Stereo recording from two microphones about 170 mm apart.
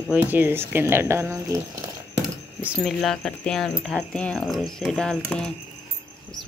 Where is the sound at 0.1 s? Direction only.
10° right (ahead or behind).